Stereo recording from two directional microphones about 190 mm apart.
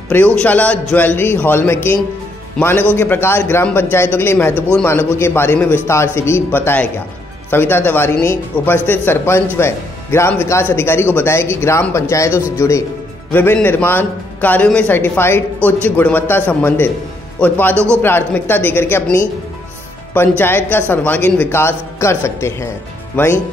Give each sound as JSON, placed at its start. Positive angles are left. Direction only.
{"t": 0.1, "sound": "a man's voice", "side_deg": 5}
{"t": 17.7, "sound": "a man's voice", "side_deg": -15}
{"t": 18.0, "sound": "speech", "side_deg": 10}